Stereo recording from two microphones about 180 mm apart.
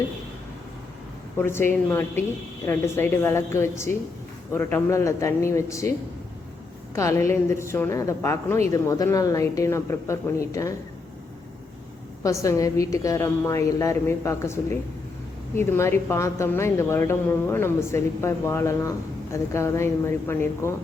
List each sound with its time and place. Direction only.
1.4 s a woman's voice: 15° left (ahead or behind)
6.9 s a woman's voice: 15° left (ahead or behind)
12.2 s a woman's voice: 15° left (ahead or behind)